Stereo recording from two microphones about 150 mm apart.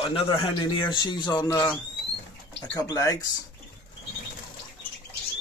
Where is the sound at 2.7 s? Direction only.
25° left (ahead or behind).